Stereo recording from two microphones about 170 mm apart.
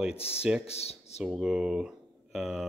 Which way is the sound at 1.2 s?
5° right (ahead or behind).